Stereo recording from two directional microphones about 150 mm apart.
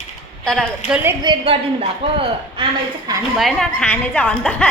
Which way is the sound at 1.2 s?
30° right (ahead or behind).